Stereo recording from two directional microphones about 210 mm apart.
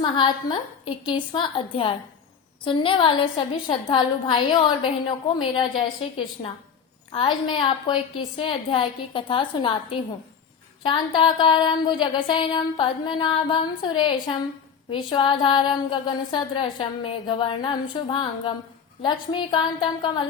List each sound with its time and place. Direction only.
0.0 s a woman's voice: 20° left (ahead or behind)
10.8 s a woman's voice: 20° left (ahead or behind)